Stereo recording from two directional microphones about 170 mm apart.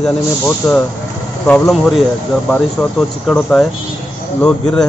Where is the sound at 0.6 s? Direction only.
5° left (ahead or behind).